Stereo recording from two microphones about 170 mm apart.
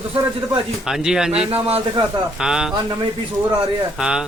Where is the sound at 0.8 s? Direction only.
5° right (ahead or behind).